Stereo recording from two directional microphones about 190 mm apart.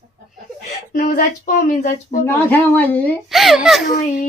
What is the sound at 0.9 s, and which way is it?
Speech, 45° left (ahead or behind).